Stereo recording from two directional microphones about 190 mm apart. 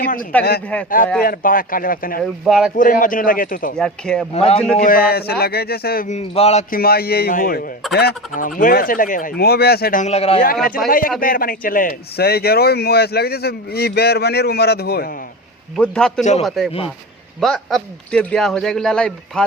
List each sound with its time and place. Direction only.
0.3 s speech: 5° left (ahead or behind)
0.9 s speech: 45° left (ahead or behind)
2.2 s speech: centre (ahead or behind)
2.7 s speech: 45° left (ahead or behind)
3.8 s speech: 5° left (ahead or behind)
4.4 s speech: 30° left (ahead or behind)
4.8 s a man's voice: 50° left (ahead or behind)
6.1 s speech: 35° left (ahead or behind)
6.7 s speech: 55° left (ahead or behind); by 10.4 s 30° left (ahead or behind)
10.4 s a man's voice: 50° left (ahead or behind)
15.7 s speech: 5° left (ahead or behind)